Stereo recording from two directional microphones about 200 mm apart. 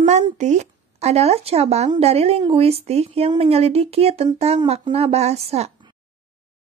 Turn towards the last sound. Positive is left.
turn(degrees=-30)  # may be behind; listen again after turning